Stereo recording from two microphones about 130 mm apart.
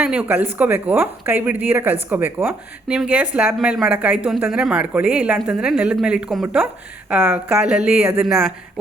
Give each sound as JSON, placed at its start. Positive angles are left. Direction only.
{"t": 0.0, "sound": "speech", "side_deg": -10}